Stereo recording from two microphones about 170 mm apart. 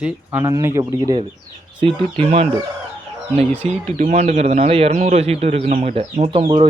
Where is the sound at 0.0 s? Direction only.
15° right (ahead or behind); by 2.2 s 30° right (ahead or behind).